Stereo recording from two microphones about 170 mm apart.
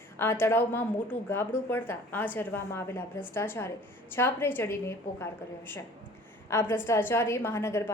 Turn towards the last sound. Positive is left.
turn(degrees=15)  # may be behind; listen again after turning